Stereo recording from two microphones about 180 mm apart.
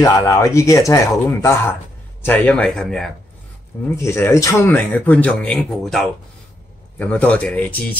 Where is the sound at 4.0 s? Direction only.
15° left (ahead or behind).